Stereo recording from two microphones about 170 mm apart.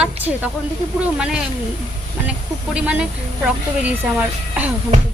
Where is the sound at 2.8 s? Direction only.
5° right (ahead or behind).